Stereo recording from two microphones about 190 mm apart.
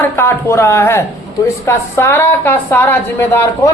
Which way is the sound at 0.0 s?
15° left (ahead or behind).